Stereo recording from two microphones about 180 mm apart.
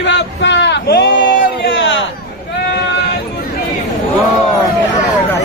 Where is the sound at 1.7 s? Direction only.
90° left.